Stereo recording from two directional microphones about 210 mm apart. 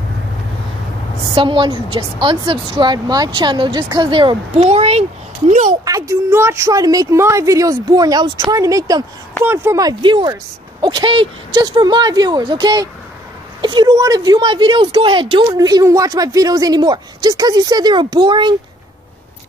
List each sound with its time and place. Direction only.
1.3 s a woman's voice: 25° right (ahead or behind)
5.7 s a woman's voice: 15° right (ahead or behind)